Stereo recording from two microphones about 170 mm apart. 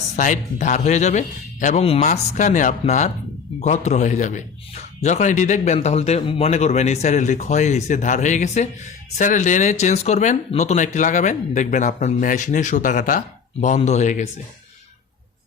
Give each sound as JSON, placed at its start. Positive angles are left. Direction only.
{"t": 0.2, "sound": "a man's voice", "side_deg": 45}